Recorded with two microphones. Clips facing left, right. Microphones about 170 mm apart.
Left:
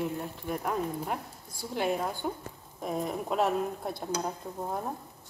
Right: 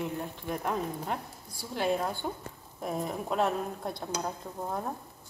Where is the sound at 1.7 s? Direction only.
15° left (ahead or behind).